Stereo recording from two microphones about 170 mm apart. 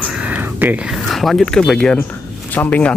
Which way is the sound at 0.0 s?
10° right (ahead or behind).